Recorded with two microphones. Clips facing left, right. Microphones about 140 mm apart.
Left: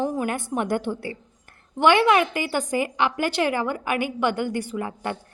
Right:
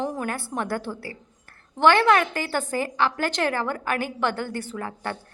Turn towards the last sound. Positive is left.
turn(degrees=15)  # may be behind; listen again after turning